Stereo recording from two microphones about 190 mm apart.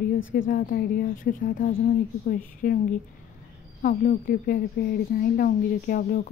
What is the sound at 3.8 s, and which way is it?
A woman's voice, 45° left (ahead or behind).